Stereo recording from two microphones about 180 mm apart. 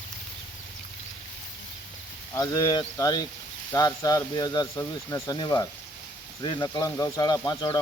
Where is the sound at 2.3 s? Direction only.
20° left (ahead or behind).